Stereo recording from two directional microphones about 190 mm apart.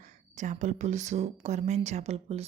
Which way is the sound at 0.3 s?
40° right (ahead or behind).